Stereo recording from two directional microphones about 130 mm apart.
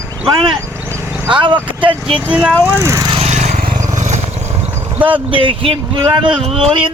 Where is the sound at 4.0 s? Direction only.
65° right (ahead or behind).